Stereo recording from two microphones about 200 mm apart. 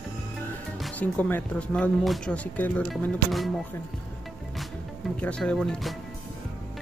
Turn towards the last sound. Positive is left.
turn(degrees=0)  # may be behind; listen again after turning